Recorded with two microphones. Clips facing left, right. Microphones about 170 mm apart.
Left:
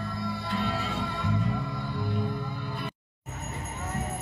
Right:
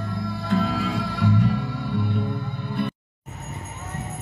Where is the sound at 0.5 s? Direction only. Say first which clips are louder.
Right 9 dB; 90° right.